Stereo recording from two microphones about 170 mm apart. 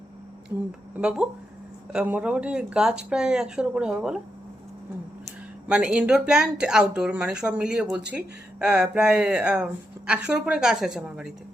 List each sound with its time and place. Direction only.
0.5 s speech: 15° right (ahead or behind)
0.9 s speech: 5° right (ahead or behind)
5.6 s speech: 5° right (ahead or behind)